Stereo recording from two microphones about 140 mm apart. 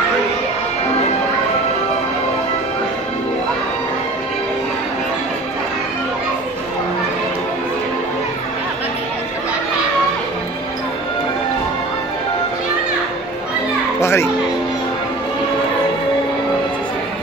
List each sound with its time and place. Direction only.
13.9 s children playing: 20° left (ahead or behind)